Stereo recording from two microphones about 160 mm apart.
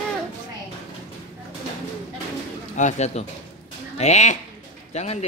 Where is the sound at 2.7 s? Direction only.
45° left (ahead or behind).